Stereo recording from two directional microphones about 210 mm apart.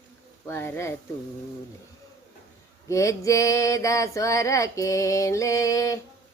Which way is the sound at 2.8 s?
15° left (ahead or behind).